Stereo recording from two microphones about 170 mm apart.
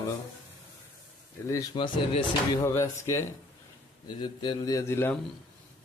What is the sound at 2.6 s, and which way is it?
Speech, 15° left (ahead or behind).